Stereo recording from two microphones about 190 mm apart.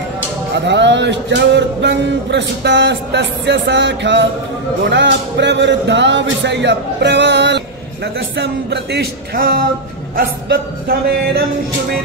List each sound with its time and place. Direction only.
0.7 s speech: 65° right (ahead or behind)
10.1 s music: 55° right (ahead or behind)